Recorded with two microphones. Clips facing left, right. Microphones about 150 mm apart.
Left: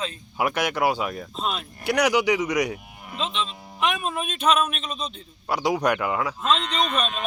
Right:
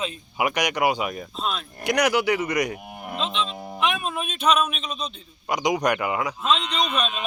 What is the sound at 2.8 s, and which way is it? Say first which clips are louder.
Cattle: right 7 dB; 55° right (ahead or behind).